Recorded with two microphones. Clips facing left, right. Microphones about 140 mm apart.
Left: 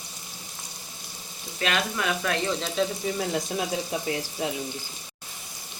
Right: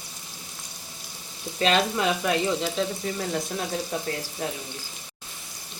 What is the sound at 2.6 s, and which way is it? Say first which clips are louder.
Frying: even; centre (ahead or behind).